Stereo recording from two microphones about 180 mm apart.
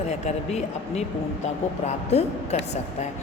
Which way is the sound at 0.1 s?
35° left (ahead or behind).